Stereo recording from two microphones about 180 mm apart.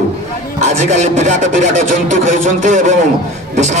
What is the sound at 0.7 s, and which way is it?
Speech, 40° right (ahead or behind).